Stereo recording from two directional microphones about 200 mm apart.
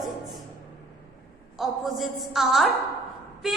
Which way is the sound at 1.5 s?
Centre (ahead or behind).